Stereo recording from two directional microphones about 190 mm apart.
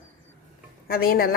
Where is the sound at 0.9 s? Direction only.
50° left (ahead or behind).